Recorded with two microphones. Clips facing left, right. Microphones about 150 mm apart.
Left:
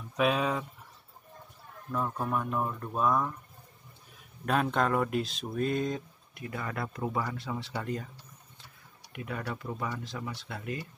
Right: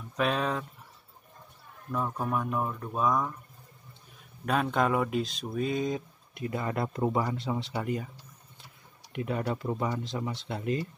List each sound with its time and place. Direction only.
0.2 s speech: 5° left (ahead or behind)
1.9 s speech: centre (ahead or behind)
4.5 s speech: centre (ahead or behind)
6.3 s speech: 25° right (ahead or behind)
9.1 s speech: 25° right (ahead or behind)